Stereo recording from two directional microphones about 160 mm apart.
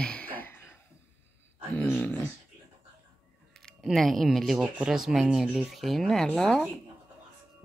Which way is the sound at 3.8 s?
Centre (ahead or behind).